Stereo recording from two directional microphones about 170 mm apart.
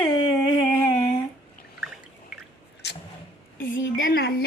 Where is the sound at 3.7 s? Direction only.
90° left.